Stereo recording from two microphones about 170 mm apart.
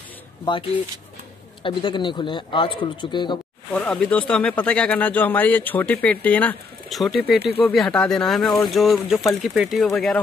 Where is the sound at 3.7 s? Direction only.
5° left (ahead or behind).